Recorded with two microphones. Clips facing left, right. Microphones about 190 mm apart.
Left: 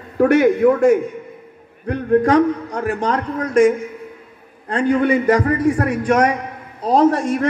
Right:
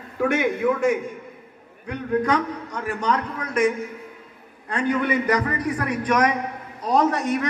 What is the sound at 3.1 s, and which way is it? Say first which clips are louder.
Speech: left 6 dB; 50° left (ahead or behind).